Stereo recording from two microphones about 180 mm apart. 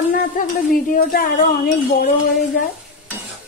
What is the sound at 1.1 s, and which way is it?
Speech, 50° left (ahead or behind).